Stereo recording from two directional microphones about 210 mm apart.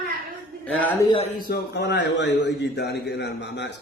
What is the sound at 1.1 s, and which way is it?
Speech, 25° left (ahead or behind).